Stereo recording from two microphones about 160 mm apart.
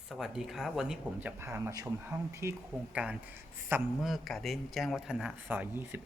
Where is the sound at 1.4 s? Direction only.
15° right (ahead or behind).